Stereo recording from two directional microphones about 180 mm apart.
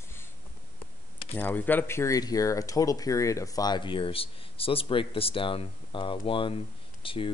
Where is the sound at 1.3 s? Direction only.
10° left (ahead or behind).